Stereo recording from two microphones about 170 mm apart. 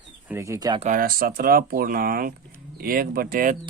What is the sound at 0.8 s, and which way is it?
Speech, 55° right (ahead or behind).